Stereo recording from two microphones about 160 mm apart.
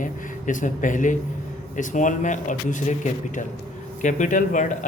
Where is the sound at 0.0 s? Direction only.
55° left (ahead or behind).